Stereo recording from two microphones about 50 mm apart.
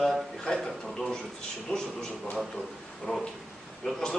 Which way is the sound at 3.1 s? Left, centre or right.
Left.